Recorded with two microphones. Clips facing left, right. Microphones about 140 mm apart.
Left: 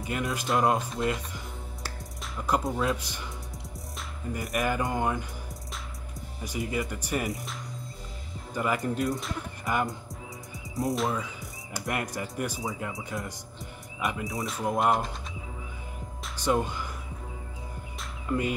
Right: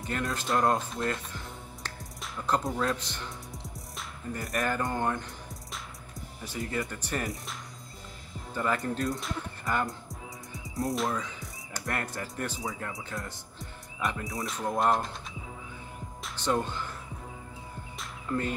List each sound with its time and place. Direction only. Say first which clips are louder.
0.0 s speech: left 2 dB; 5° left (ahead or behind)
4.3 s speech: left 2 dB; 5° left (ahead or behind)
6.4 s speech: left 2 dB; 15° left (ahead or behind)
8.5 s speech: left 2 dB; 10° left (ahead or behind)
9.8 s music: left 2 dB; centre (ahead or behind)
12.6 s speech: left 2 dB; 15° left (ahead or behind)
16.3 s speech: left 2 dB; 10° left (ahead or behind)
18.3 s speech: left 2 dB; 10° left (ahead or behind)